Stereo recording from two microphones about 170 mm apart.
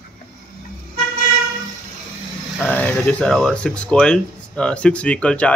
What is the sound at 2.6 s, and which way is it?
Vehicle, 10° left (ahead or behind).